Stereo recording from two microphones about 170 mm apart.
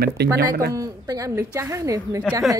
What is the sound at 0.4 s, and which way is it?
Speech, 65° right (ahead or behind).